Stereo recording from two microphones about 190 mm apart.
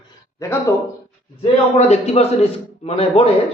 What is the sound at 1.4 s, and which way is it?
A man's voice, 35° left (ahead or behind).